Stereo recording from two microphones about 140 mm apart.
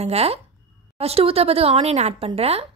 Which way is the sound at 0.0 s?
45° right (ahead or behind).